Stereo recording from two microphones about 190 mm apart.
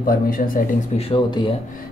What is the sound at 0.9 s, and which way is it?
Speech, 30° left (ahead or behind).